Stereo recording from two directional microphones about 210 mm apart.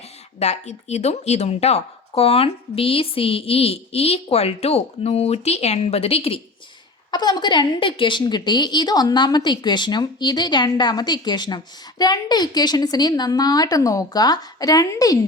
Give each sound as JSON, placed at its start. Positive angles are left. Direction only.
{"t": 0.3, "sound": "a woman's voice", "side_deg": 30}